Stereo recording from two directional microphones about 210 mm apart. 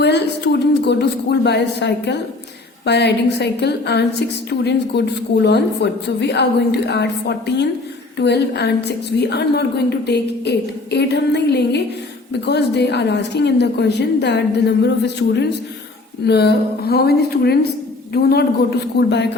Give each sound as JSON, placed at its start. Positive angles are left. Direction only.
{"t": 0.0, "sound": "a woman's voice", "side_deg": 55}
{"t": 16.2, "sound": "a woman's voice", "side_deg": 50}